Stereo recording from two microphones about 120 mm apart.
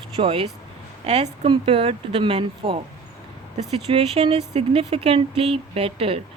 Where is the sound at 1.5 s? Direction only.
50° right (ahead or behind).